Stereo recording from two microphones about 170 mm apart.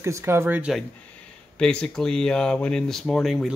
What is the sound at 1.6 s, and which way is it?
Speech, 5° left (ahead or behind).